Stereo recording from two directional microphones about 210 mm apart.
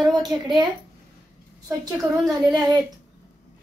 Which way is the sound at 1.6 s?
15° right (ahead or behind).